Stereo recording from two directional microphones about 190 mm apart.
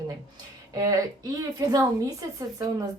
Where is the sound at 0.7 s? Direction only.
20° right (ahead or behind).